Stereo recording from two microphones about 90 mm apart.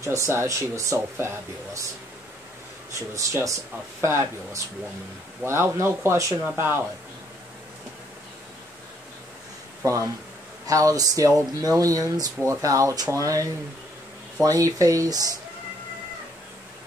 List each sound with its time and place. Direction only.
0.0 s speech: 35° right (ahead or behind)
2.9 s speech: 35° right (ahead or behind)
10.7 s speech: 40° right (ahead or behind)